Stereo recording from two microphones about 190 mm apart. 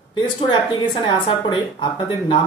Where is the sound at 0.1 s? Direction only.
25° left (ahead or behind).